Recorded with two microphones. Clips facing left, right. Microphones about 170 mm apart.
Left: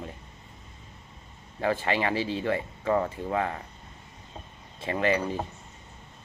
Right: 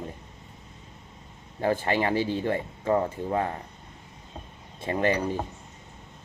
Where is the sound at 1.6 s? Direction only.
45° right (ahead or behind).